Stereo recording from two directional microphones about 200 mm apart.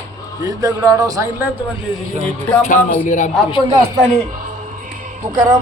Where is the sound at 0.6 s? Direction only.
15° right (ahead or behind).